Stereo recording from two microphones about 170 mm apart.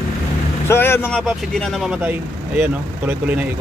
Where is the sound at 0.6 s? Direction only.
15° left (ahead or behind).